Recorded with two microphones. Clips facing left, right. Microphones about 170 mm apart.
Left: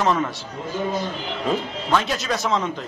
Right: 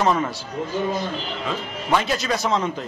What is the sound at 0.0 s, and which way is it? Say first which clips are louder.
Speech: right 1 dB; centre (ahead or behind).